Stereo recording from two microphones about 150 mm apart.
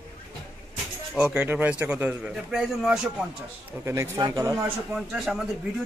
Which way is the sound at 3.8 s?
20° right (ahead or behind).